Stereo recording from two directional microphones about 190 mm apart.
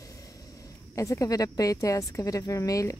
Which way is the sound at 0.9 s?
15° left (ahead or behind).